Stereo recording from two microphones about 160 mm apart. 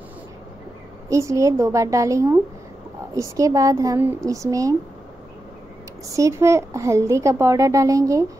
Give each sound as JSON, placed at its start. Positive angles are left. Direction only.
{"t": 1.0, "sound": "a woman's voice", "side_deg": -20}
{"t": 6.0, "sound": "a woman's voice", "side_deg": -20}